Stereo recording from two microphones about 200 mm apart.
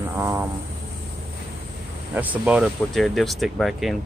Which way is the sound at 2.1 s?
5° right (ahead or behind).